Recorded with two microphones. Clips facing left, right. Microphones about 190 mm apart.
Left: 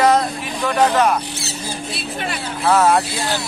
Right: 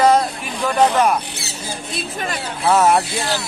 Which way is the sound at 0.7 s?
10° right (ahead or behind).